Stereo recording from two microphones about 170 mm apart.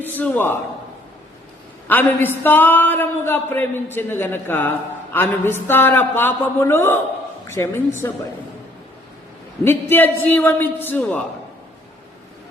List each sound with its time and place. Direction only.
0.0 s speech: 10° left (ahead or behind)
1.9 s a woman's voice: 10° left (ahead or behind)
9.6 s speech: 15° left (ahead or behind)